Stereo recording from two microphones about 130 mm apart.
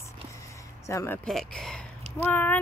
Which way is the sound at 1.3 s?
5° left (ahead or behind).